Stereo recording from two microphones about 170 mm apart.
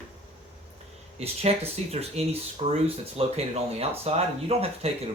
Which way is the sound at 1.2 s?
35° right (ahead or behind).